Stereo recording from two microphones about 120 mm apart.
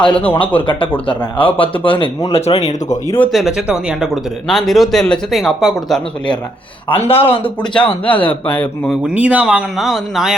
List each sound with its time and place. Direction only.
0.1 s speech: 15° left (ahead or behind)
0.3 s speech: 45° left (ahead or behind)
3.3 s speech: 5° right (ahead or behind)
6.8 s speech: 50° left (ahead or behind)
8.0 s speech: 15° left (ahead or behind)
9.1 s speech: 10° right (ahead or behind)